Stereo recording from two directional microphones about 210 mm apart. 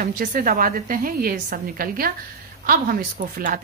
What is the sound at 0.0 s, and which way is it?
A woman's voice, 40° right (ahead or behind).